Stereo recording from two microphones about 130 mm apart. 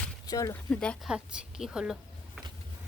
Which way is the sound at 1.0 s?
5° right (ahead or behind).